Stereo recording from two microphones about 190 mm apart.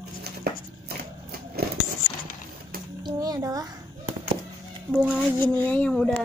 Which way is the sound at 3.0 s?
20° right (ahead or behind).